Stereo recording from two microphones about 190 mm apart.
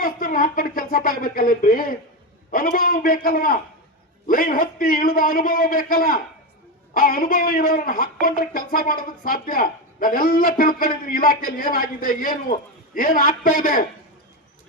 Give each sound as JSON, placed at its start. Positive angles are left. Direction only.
{"t": 0.0, "sound": "speech", "side_deg": 45}